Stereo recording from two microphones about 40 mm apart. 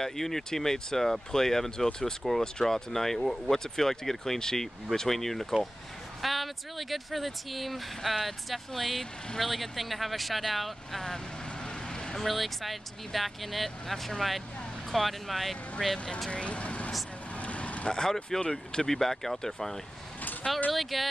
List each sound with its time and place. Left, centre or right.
0.0 s speech: centre
11.6 s vehicle: centre
12.2 s speech: centre
16.3 s speech: left
17.4 s vehicle: left
17.8 s speech: centre